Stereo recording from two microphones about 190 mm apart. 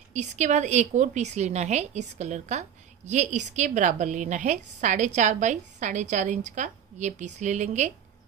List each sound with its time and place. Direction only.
0.1 s a woman's voice: 40° right (ahead or behind)